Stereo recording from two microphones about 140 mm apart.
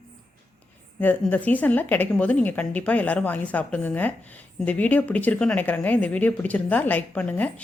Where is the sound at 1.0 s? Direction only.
10° left (ahead or behind).